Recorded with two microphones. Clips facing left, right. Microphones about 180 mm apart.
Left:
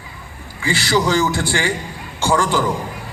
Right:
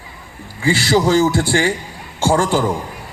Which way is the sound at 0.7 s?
30° right (ahead or behind).